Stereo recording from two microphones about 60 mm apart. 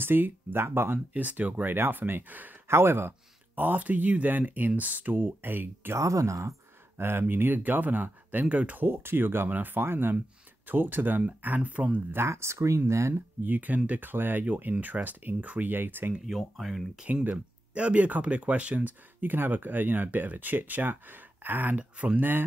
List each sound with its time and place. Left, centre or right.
0.0 s speech: right
1.1 s speech: right
2.7 s speech: right
5.9 s speech: right
7.0 s speech: right
8.8 s speech: right
12.2 s speech: right
13.4 s speech: right
16.3 s speech: centre
17.0 s speech: right